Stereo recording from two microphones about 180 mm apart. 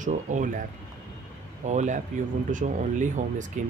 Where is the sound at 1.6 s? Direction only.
40° right (ahead or behind).